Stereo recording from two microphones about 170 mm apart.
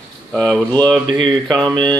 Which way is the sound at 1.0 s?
25° right (ahead or behind).